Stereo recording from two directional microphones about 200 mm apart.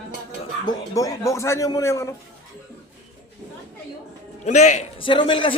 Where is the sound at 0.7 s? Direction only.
15° left (ahead or behind).